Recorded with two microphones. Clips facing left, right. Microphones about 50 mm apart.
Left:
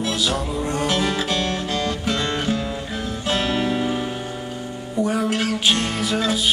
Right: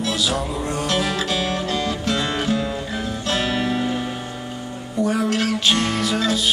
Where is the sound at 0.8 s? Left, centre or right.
Centre.